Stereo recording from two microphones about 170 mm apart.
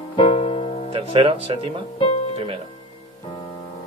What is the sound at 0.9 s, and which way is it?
Speech, 30° right (ahead or behind).